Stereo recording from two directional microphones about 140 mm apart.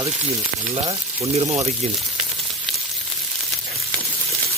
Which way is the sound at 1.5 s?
50° right (ahead or behind).